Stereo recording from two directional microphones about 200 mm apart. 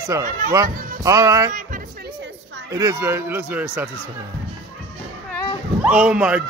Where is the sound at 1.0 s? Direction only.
15° right (ahead or behind).